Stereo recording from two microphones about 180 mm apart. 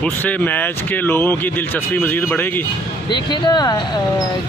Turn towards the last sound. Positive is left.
turn(degrees=25)  # may be behind; listen again after turning